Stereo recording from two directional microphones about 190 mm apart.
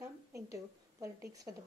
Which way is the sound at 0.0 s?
15° right (ahead or behind).